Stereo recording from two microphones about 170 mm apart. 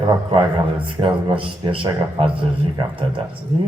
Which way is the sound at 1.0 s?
30° right (ahead or behind).